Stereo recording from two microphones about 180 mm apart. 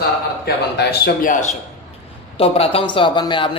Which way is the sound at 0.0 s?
60° left (ahead or behind).